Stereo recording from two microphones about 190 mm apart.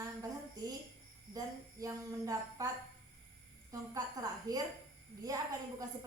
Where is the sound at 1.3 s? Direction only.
20° right (ahead or behind).